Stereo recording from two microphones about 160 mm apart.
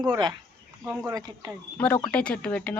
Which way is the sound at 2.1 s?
5° left (ahead or behind).